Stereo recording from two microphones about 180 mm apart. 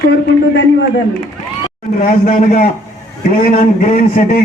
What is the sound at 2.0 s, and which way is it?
A man's voice, 40° left (ahead or behind).